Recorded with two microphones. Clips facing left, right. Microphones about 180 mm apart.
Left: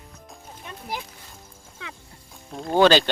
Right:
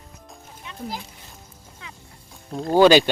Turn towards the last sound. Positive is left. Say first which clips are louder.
# right 3 dB
turn(degrees=-10)  # may be behind; listen again after turning